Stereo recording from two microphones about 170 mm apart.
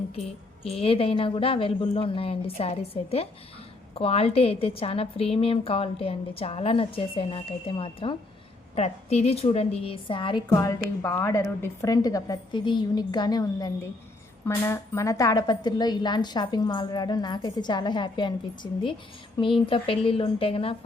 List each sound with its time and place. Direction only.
0.6 s a woman's voice: 35° left (ahead or behind)